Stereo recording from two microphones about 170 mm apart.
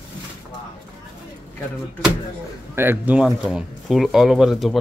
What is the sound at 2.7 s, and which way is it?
Speech, 10° right (ahead or behind).